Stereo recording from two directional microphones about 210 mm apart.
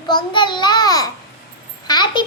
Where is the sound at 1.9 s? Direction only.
20° left (ahead or behind).